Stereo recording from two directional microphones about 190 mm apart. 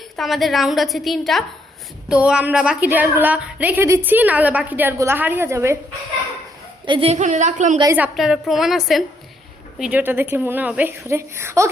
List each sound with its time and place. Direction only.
0.2 s a woman's voice: centre (ahead or behind)
6.8 s a woman's voice: 30° right (ahead or behind)
7.9 s a woman's voice: 5° right (ahead or behind)